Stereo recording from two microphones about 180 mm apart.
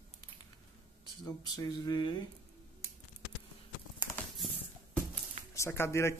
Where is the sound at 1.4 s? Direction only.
20° left (ahead or behind).